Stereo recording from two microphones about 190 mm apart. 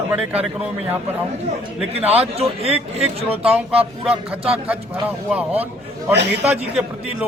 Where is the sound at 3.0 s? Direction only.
5° right (ahead or behind).